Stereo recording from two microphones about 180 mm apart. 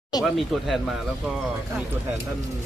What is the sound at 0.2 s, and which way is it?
Speech, centre (ahead or behind).